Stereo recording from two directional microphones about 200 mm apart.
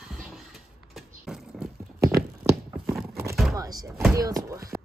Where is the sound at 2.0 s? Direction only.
15° right (ahead or behind).